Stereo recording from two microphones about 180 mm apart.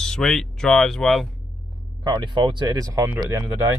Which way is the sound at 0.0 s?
5° left (ahead or behind).